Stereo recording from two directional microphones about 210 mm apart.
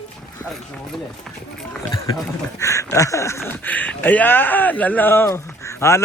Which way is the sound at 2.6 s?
15° left (ahead or behind).